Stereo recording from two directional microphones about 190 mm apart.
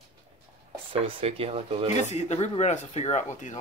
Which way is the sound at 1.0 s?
30° right (ahead or behind).